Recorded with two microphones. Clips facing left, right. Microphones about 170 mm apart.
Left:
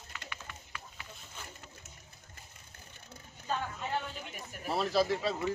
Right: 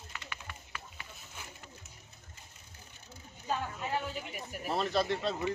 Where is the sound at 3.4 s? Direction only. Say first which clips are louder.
Right 1 dB; 5° right (ahead or behind).